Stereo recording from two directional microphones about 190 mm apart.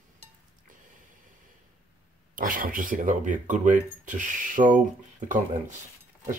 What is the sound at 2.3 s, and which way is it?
Speech, 45° right (ahead or behind).